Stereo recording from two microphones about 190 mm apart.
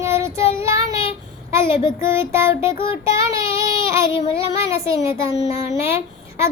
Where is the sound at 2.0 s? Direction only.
15° right (ahead or behind).